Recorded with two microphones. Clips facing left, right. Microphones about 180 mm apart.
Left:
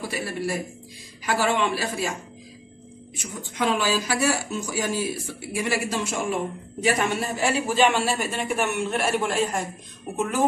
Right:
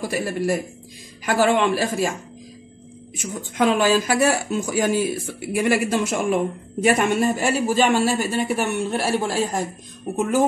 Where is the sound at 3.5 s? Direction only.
50° right (ahead or behind); by 9.7 s 35° right (ahead or behind).